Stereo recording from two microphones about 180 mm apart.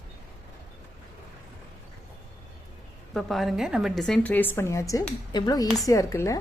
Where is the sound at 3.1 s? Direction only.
Centre (ahead or behind).